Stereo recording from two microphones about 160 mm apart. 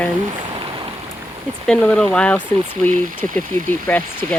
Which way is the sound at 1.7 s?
5° left (ahead or behind).